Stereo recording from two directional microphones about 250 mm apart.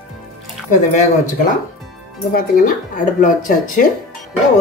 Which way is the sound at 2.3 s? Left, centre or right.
Left.